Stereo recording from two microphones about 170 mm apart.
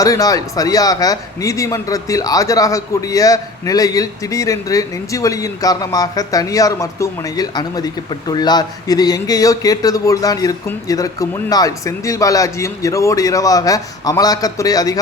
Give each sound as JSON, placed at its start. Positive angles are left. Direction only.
{"t": 0.0, "sound": "a man's voice", "side_deg": 20}